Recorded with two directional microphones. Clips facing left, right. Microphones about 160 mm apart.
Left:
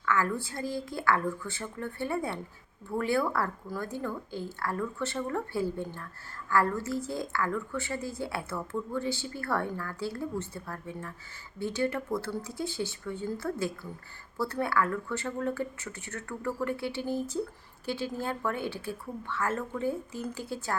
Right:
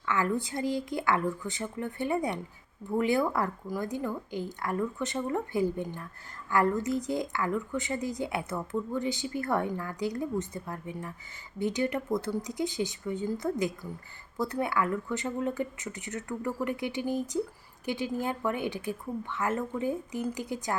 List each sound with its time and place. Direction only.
0.0 s a woman's voice: 20° right (ahead or behind)